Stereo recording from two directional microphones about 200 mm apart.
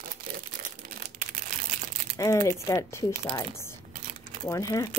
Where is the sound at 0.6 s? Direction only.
45° right (ahead or behind).